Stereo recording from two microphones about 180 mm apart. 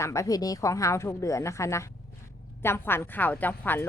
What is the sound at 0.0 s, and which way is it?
Speech, 15° left (ahead or behind).